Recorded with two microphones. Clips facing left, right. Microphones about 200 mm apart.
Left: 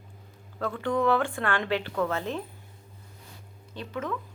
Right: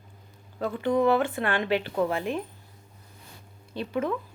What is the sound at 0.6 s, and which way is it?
A woman's voice, 20° right (ahead or behind).